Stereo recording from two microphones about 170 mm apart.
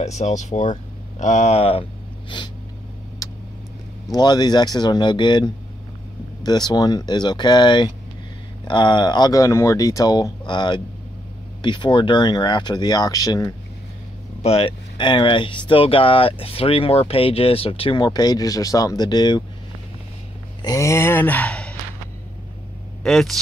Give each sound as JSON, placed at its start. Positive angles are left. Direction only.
{"t": 0.0, "sound": "speech", "side_deg": 40}
{"t": 4.1, "sound": "speech", "side_deg": 25}
{"t": 14.4, "sound": "speech", "side_deg": 35}
{"t": 20.6, "sound": "a sound", "side_deg": 20}
{"t": 23.0, "sound": "speech", "side_deg": 0}